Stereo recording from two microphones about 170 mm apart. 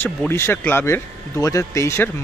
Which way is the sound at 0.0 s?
15° left (ahead or behind).